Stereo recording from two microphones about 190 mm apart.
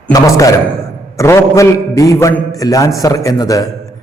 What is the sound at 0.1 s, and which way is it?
A man's voice, 15° left (ahead or behind).